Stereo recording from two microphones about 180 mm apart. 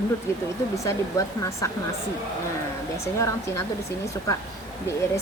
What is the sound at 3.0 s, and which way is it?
Speech, 15° left (ahead or behind).